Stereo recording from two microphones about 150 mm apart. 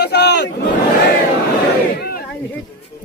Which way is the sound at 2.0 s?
90° left.